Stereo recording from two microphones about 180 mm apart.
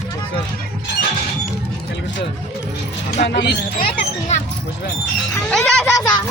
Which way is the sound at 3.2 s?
75° left (ahead or behind).